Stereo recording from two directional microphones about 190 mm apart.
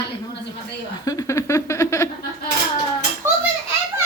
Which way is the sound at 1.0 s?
15° left (ahead or behind).